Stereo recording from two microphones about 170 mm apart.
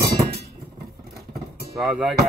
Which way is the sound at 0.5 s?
70° right (ahead or behind).